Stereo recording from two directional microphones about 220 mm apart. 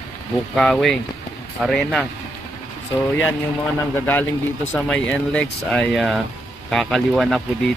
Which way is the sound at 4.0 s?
10° left (ahead or behind).